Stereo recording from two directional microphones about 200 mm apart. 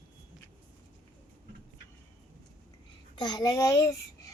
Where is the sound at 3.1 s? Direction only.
20° left (ahead or behind).